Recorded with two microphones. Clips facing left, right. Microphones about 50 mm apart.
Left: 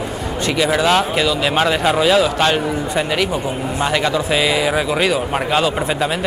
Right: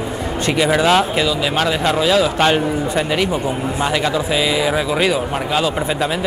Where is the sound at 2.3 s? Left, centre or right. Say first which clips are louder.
Right 1 dB; centre.